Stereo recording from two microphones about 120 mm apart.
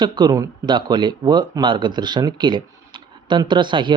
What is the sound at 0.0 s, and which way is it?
Speech, 35° right (ahead or behind).